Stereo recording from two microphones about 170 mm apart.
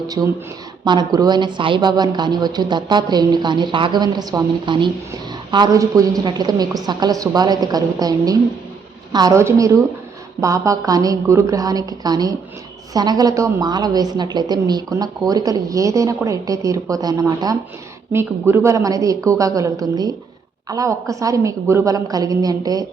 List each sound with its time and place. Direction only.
0.9 s a woman's voice: 25° right (ahead or behind)